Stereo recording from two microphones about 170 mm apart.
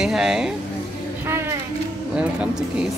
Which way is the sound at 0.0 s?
5° right (ahead or behind).